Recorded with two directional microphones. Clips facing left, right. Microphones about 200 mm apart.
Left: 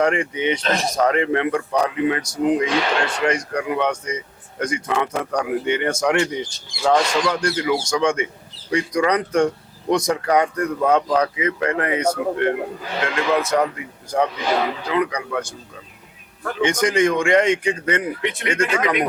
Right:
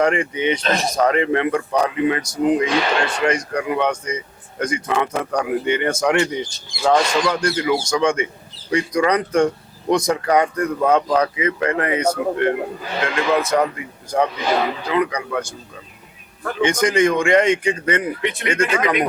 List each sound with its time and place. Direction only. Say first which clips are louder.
0.0 s speech: right 1 dB; 10° right (ahead or behind)
5.9 s speech: right 1 dB; 25° right (ahead or behind)
6.7 s a man's voice: right 1 dB; 5° right (ahead or behind)
16.6 s speech: right 1 dB; 5° right (ahead or behind)